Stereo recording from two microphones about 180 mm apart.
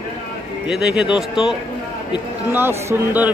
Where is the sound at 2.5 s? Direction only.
15° right (ahead or behind).